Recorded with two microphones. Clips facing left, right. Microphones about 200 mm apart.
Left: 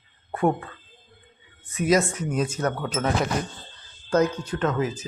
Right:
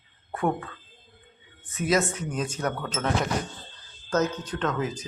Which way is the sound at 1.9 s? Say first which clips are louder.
Left 3 dB; 10° left (ahead or behind).